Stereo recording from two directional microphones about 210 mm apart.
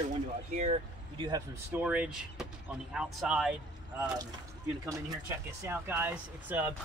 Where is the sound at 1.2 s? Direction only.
20° right (ahead or behind).